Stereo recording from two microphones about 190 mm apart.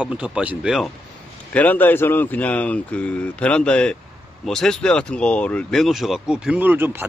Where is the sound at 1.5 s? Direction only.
10° left (ahead or behind); by 7.1 s 10° right (ahead or behind).